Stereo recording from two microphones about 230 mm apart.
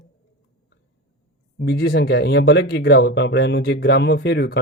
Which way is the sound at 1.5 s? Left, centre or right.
Left.